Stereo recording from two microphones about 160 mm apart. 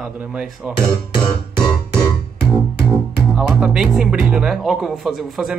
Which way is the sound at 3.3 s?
5° right (ahead or behind).